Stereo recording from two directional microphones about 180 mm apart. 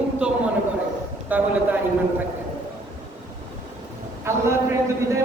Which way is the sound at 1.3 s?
10° right (ahead or behind).